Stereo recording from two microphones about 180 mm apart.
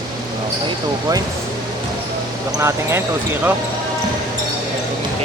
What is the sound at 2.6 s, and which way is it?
Speech, 15° right (ahead or behind).